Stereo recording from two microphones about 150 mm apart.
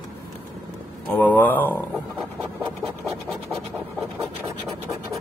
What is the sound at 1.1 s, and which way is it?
Speech, 10° left (ahead or behind).